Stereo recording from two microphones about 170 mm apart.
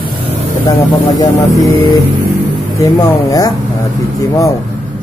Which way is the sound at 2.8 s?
20° left (ahead or behind).